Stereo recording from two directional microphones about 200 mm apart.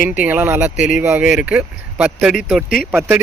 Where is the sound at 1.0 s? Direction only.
5° right (ahead or behind).